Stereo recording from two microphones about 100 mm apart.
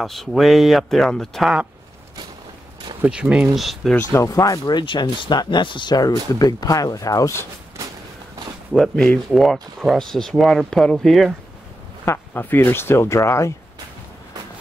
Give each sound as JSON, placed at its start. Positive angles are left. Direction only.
{"t": 0.0, "sound": "speech", "side_deg": 0}
{"t": 3.1, "sound": "speech", "side_deg": -10}
{"t": 4.1, "sound": "speech", "side_deg": 35}
{"t": 7.8, "sound": "a sound", "side_deg": -30}
{"t": 8.7, "sound": "speech", "side_deg": 5}
{"t": 12.0, "sound": "speech", "side_deg": 20}